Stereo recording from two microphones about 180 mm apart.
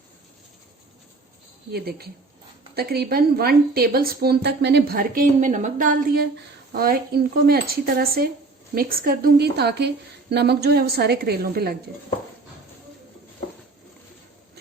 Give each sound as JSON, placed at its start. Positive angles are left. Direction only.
{"t": 1.7, "sound": "a woman's voice", "side_deg": -60}